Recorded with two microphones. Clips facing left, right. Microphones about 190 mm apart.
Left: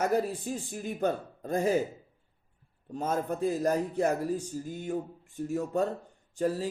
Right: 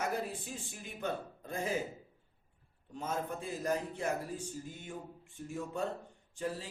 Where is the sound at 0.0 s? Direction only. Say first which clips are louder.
Left 9 dB; 40° left (ahead or behind).